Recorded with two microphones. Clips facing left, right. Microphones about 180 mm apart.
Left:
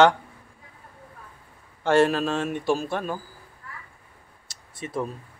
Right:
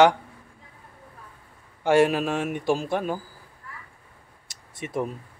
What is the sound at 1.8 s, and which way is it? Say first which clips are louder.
A man's voice: even; 15° right (ahead or behind).